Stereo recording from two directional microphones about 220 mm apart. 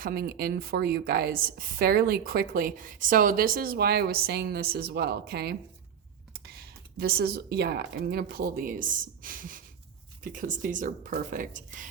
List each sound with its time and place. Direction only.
0.0 s a woman's voice: 45° right (ahead or behind)